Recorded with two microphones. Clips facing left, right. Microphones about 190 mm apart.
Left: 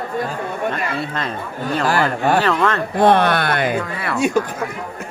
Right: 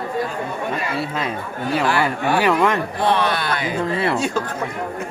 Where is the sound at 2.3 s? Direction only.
10° right (ahead or behind).